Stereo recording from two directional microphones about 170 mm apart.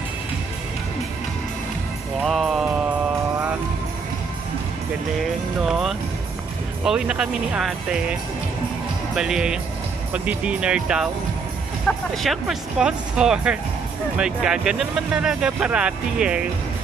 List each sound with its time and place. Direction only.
2.2 s music: centre (ahead or behind)
5.6 s music: centre (ahead or behind)
6.8 s speech: 5° right (ahead or behind)
12.1 s speech: centre (ahead or behind)